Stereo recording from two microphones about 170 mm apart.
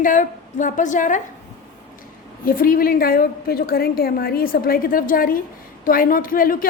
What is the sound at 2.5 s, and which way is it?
A woman's voice, 55° left (ahead or behind).